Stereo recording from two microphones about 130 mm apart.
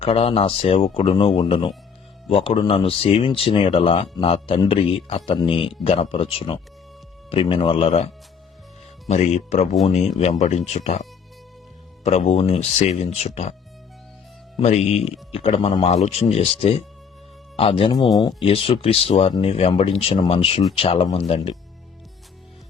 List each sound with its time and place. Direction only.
0.0 s speech: 50° left (ahead or behind)
12.0 s speech: 55° left (ahead or behind)
14.6 s speech: 55° left (ahead or behind)
18.1 s speech: 30° left (ahead or behind)
18.4 s speech: 50° left (ahead or behind)